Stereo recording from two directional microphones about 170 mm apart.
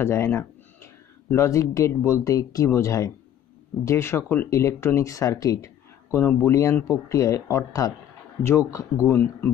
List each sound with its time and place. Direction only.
0.0 s speech: 15° left (ahead or behind)